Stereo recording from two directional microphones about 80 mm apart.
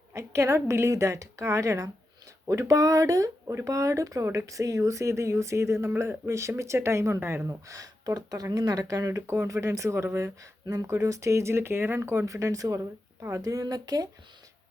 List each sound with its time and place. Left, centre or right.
0.1 s speech: right
10.7 s speech: right